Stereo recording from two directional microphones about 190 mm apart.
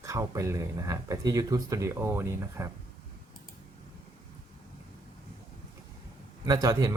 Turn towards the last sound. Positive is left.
turn(degrees=-20)  # may be behind; listen again after turning